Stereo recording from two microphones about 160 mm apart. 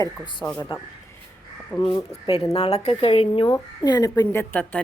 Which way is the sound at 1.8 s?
35° left (ahead or behind).